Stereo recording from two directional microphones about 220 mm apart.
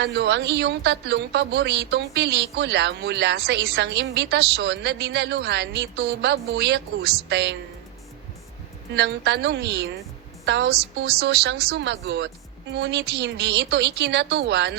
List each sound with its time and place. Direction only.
0.0 s a woman's voice: 50° right (ahead or behind)
9.0 s a woman's voice: 50° right (ahead or behind)